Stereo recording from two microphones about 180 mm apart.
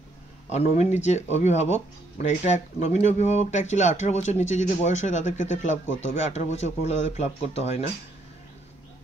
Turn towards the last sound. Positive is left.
turn(degrees=35)  # may be behind; listen again after turning